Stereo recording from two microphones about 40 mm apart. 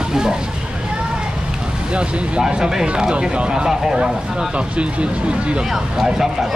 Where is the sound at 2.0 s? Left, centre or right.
Right.